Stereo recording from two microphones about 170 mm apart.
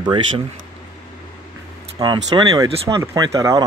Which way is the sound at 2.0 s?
25° right (ahead or behind).